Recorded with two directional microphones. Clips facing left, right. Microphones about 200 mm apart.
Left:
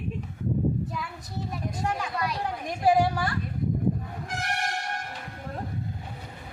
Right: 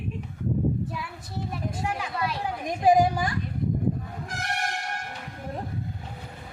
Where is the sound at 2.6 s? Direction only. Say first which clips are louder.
Right 3 dB; 20° right (ahead or behind).